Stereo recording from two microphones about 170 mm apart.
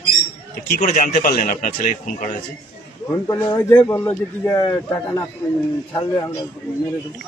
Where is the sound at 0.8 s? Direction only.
45° left (ahead or behind).